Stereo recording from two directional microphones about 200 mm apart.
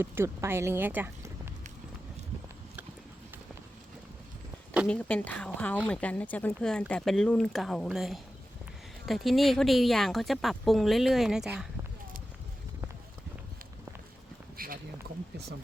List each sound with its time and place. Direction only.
0.0 s speech: 10° right (ahead or behind)
4.9 s speech: 5° left (ahead or behind)
14.6 s a sound: 45° right (ahead or behind)